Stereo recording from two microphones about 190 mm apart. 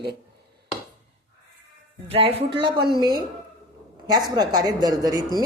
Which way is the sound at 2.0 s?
30° right (ahead or behind).